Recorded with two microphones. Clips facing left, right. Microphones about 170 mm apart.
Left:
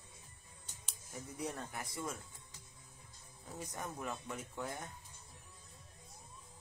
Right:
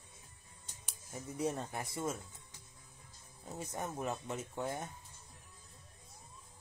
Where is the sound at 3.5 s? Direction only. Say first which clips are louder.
Right 4 dB; 25° right (ahead or behind).